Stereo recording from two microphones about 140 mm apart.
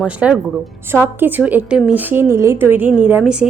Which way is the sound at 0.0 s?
10° right (ahead or behind).